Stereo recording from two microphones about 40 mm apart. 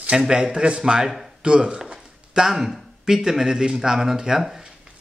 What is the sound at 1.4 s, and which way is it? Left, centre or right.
Speech, right.